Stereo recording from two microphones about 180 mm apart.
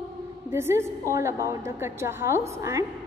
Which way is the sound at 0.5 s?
15° right (ahead or behind).